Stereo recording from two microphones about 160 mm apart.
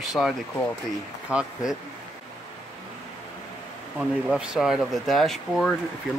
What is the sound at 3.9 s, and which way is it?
Speech, 5° right (ahead or behind).